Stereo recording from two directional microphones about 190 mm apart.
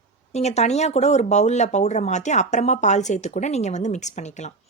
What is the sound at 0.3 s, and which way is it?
Speech, 35° left (ahead or behind).